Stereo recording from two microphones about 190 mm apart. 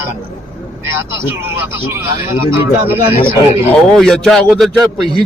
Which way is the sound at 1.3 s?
10° right (ahead or behind).